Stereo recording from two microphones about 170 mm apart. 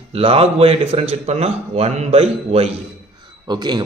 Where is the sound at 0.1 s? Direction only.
35° right (ahead or behind).